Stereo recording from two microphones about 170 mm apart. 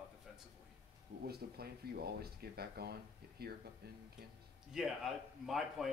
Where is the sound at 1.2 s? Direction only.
65° right (ahead or behind).